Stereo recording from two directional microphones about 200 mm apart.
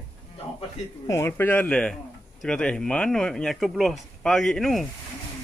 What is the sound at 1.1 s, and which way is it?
Speech, 10° left (ahead or behind).